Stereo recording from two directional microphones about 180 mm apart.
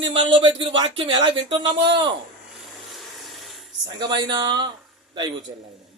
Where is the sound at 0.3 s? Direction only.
30° right (ahead or behind).